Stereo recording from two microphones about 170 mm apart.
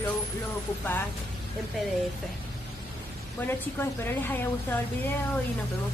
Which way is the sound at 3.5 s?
10° left (ahead or behind).